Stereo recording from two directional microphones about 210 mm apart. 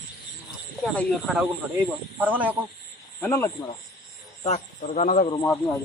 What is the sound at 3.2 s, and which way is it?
Speech, 10° left (ahead or behind).